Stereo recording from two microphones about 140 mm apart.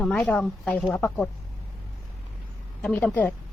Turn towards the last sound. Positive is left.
turn(degrees=10)  # may be behind; listen again after turning